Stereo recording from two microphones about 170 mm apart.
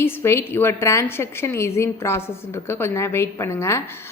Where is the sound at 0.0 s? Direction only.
15° left (ahead or behind).